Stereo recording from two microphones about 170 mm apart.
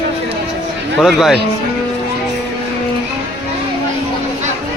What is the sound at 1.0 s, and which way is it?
Speech, centre (ahead or behind).